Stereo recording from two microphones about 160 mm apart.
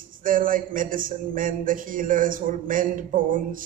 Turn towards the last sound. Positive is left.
turn(degrees=-60)  # may be behind; listen again after turning